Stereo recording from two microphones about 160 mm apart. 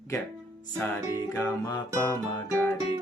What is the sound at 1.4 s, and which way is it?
Music, 15° left (ahead or behind).